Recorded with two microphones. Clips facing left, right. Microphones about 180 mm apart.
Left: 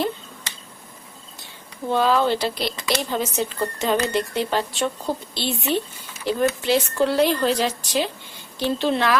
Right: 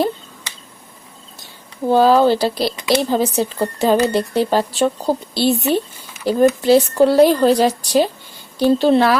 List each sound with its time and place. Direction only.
1.9 s speech: 35° right (ahead or behind)